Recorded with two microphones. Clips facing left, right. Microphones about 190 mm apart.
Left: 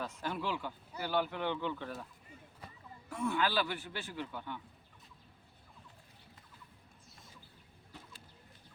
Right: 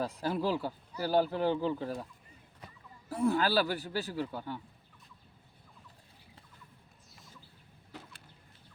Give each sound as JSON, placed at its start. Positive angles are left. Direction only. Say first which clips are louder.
{"t": 0.0, "sound": "speech", "louder": "right 6 dB", "side_deg": -35}
{"t": 3.1, "sound": "speech", "louder": "right 5 dB", "side_deg": -35}